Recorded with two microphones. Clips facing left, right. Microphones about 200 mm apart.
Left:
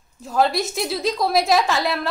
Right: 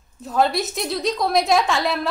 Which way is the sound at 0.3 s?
Centre (ahead or behind).